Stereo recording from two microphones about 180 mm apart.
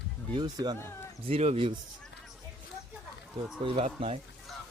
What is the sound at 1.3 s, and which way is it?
Speech, 35° right (ahead or behind).